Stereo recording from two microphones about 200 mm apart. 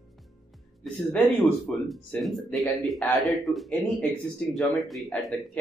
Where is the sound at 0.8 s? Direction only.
5° left (ahead or behind).